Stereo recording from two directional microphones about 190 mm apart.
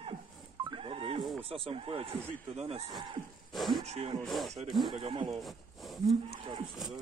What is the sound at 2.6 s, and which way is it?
Cattle, 35° right (ahead or behind).